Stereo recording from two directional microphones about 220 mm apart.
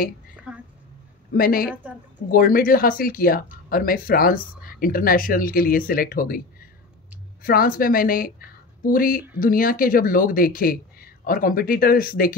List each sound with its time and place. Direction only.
0.5 s a sound: 5° right (ahead or behind)
1.3 s speech: 40° left (ahead or behind)
7.4 s speech: 40° left (ahead or behind)